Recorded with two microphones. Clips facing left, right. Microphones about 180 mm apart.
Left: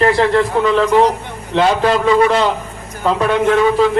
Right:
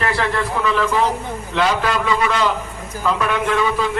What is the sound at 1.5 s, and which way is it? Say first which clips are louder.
A man's voice: left 6 dB; 35° left (ahead or behind).